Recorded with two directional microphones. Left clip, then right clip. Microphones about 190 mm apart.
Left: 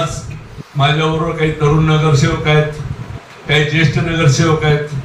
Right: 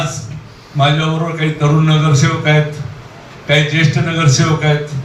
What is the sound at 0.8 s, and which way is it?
Speech, 40° right (ahead or behind).